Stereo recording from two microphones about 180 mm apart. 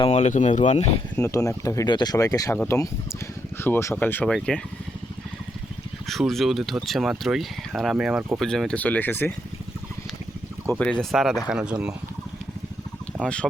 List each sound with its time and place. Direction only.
0.0 s speech: 35° left (ahead or behind)
1.1 s speech: 15° left (ahead or behind)
6.1 s speech: centre (ahead or behind)
10.7 s speech: 5° left (ahead or behind)
13.2 s speech: 5° left (ahead or behind)